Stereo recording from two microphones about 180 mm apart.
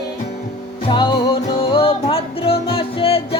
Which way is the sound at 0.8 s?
25° left (ahead or behind).